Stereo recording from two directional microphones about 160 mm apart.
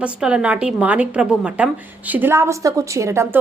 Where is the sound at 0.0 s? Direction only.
5° right (ahead or behind).